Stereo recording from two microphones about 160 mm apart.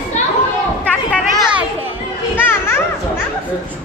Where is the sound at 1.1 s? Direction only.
5° left (ahead or behind).